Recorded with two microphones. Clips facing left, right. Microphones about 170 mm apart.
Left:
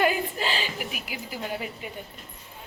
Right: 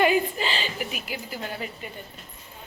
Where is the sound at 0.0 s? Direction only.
Centre (ahead or behind).